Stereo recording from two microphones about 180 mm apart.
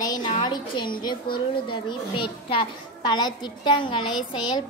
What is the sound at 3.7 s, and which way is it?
Speech, 25° left (ahead or behind).